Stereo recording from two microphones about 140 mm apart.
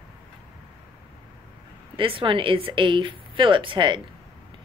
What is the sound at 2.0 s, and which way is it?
A woman's voice, 40° right (ahead or behind).